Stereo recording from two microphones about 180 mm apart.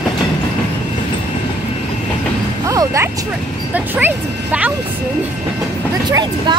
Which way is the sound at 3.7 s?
10° right (ahead or behind).